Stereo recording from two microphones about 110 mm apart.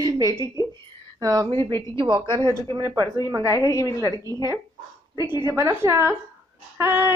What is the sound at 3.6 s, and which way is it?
Speech, 30° left (ahead or behind).